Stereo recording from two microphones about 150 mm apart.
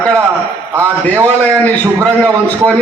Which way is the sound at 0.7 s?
20° right (ahead or behind).